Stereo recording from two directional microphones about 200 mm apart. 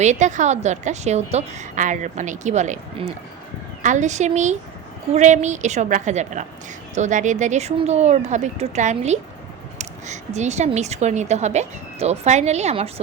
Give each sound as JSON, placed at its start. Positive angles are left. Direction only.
{"t": 0.0, "sound": "speech", "side_deg": -35}